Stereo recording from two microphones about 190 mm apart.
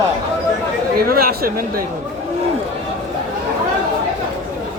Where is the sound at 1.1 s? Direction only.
50° right (ahead or behind).